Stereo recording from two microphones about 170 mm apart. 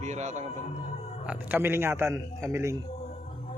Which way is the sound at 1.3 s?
10° right (ahead or behind).